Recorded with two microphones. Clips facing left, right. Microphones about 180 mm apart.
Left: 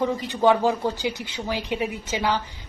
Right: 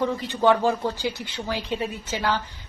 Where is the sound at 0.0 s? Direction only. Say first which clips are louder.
Left 1 dB; 15° left (ahead or behind).